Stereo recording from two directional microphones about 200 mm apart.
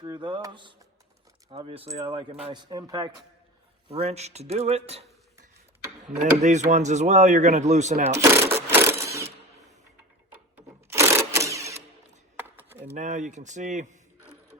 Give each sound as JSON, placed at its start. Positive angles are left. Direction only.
{"t": 0.0, "sound": "a sound", "side_deg": -20}
{"t": 3.8, "sound": "speech", "side_deg": -30}
{"t": 6.1, "sound": "speech", "side_deg": -35}
{"t": 8.1, "sound": "speech", "side_deg": -15}
{"t": 8.7, "sound": "sewing machine", "side_deg": -10}
{"t": 10.8, "sound": "a sound", "side_deg": -15}
{"t": 12.4, "sound": "chopping", "side_deg": -10}
{"t": 12.8, "sound": "speech", "side_deg": -35}